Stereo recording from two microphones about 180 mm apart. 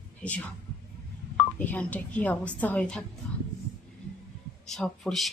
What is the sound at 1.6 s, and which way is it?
A woman's voice, 10° left (ahead or behind).